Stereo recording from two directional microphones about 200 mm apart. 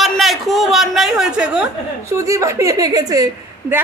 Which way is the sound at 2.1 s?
15° right (ahead or behind).